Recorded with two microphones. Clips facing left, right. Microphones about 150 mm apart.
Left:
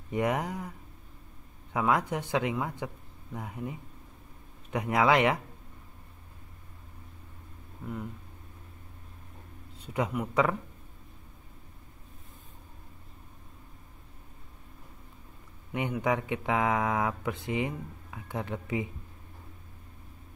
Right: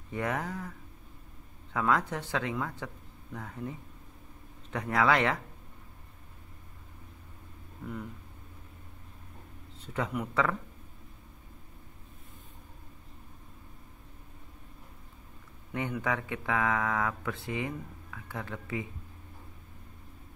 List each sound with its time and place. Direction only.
0.1 s speech: 15° left (ahead or behind)
9.8 s speech: 15° left (ahead or behind)
15.7 s speech: 15° left (ahead or behind)